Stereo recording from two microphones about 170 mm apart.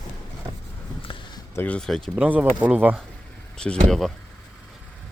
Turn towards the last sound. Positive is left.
turn(degrees=0)  # may be behind; listen again after turning